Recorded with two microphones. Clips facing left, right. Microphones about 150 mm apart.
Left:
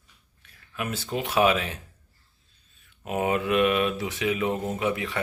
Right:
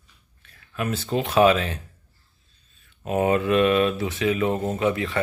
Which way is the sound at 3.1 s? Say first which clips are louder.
Right 4 dB; 10° left (ahead or behind).